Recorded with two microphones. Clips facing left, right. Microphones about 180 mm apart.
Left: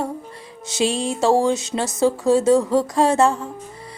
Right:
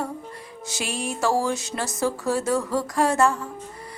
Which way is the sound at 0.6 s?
25° left (ahead or behind).